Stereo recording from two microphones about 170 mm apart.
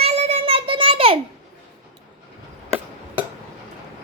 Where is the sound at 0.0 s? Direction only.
40° right (ahead or behind).